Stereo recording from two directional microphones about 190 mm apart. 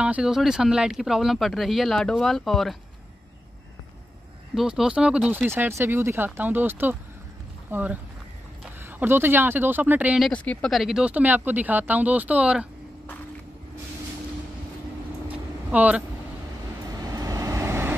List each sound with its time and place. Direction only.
0.0 s speech: 5° right (ahead or behind)
4.6 s speech: 5° right (ahead or behind)
15.7 s speech: 10° right (ahead or behind)
16.9 s vehicle: 20° right (ahead or behind)